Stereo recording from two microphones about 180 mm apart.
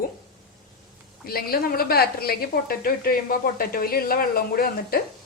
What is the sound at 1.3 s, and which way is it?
A woman's voice, 55° left (ahead or behind).